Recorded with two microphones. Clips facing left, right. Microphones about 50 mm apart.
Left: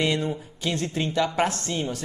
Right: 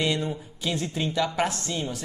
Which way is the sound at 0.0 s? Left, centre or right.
Left.